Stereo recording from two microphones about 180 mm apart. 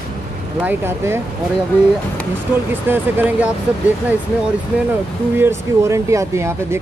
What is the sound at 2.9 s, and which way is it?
Speech, 10° right (ahead or behind).